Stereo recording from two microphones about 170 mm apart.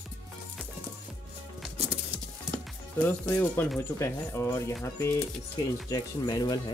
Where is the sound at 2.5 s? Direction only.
10° left (ahead or behind).